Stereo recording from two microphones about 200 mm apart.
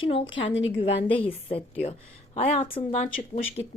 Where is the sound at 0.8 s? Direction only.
25° left (ahead or behind).